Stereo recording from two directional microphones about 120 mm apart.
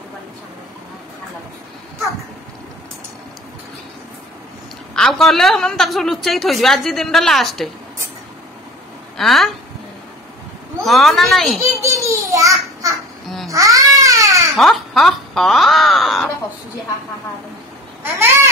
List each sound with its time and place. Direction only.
4.9 s a woman's voice: 5° left (ahead or behind)
9.1 s speech: centre (ahead or behind)
10.8 s a woman's voice: centre (ahead or behind)
11.8 s a sound: 25° right (ahead or behind)
13.5 s baby cry: 25° right (ahead or behind)
14.5 s speech: centre (ahead or behind)
18.0 s a sound: 20° right (ahead or behind)